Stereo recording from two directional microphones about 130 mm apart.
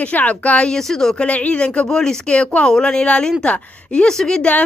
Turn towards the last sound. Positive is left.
turn(degrees=5)  # may be behind; listen again after turning